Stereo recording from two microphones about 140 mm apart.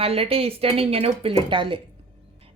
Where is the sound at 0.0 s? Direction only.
45° right (ahead or behind).